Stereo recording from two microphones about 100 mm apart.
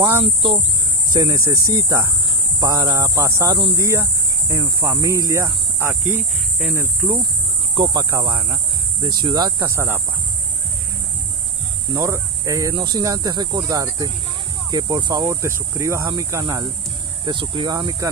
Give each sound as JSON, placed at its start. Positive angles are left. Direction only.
{"t": 1.1, "sound": "speech", "side_deg": -45}
{"t": 1.4, "sound": "speech", "side_deg": -30}
{"t": 3.2, "sound": "speech", "side_deg": -30}
{"t": 7.7, "sound": "speech", "side_deg": -50}
{"t": 8.0, "sound": "speech", "side_deg": -35}
{"t": 8.3, "sound": "speech", "side_deg": -55}
{"t": 9.0, "sound": "speech", "side_deg": -45}
{"t": 9.6, "sound": "speech", "side_deg": -25}
{"t": 11.9, "sound": "speech", "side_deg": -30}
{"t": 12.7, "sound": "speech", "side_deg": -45}
{"t": 15.4, "sound": "speech", "side_deg": -30}
{"t": 17.2, "sound": "speech", "side_deg": -50}